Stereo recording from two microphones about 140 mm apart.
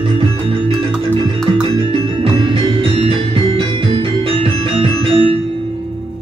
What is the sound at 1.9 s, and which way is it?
Music, 40° right (ahead or behind).